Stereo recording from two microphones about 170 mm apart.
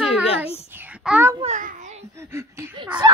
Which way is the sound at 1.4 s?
45° right (ahead or behind).